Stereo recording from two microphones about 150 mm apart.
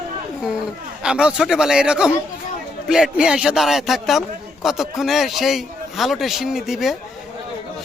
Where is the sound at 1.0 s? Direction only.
5° right (ahead or behind).